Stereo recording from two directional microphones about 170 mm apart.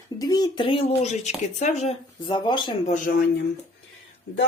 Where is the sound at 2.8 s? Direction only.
50° left (ahead or behind).